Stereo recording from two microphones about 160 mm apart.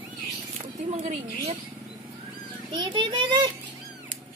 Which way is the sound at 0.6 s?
45° right (ahead or behind).